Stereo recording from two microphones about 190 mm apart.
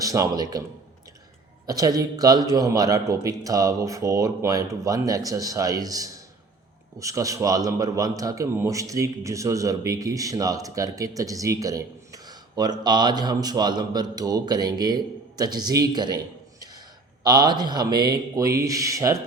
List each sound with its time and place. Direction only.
0.0 s speech: 20° right (ahead or behind)
1.6 s a man's voice: 20° right (ahead or behind)